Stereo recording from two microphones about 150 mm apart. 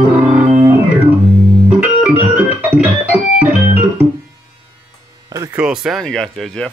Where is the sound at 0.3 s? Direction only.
10° right (ahead or behind).